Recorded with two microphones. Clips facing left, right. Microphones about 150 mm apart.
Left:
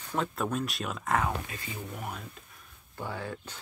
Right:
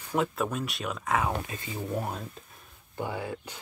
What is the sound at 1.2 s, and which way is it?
Speech, 25° right (ahead or behind).